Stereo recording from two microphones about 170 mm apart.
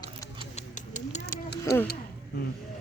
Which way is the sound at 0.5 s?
45° left (ahead or behind).